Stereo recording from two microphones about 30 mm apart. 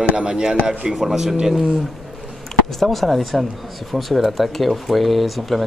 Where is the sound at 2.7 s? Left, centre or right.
Centre.